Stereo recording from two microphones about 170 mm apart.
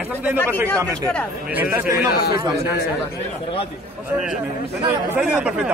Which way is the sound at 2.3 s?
20° right (ahead or behind).